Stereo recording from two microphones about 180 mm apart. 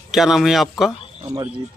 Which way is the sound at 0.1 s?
Centre (ahead or behind).